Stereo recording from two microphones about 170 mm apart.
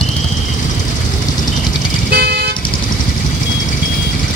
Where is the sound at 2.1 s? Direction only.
65° right (ahead or behind).